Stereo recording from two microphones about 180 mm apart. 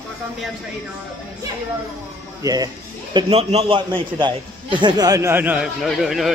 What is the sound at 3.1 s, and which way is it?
A man's voice, 35° right (ahead or behind).